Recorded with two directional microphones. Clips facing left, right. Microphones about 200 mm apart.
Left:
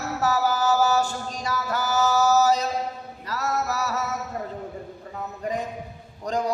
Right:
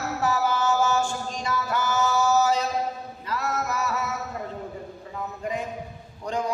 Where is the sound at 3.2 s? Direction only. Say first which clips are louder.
Left 1 dB; 40° left (ahead or behind).